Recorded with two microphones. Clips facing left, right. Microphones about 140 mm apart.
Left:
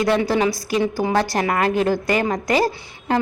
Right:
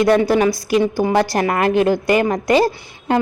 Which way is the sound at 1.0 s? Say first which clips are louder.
Right 3 dB; 15° right (ahead or behind).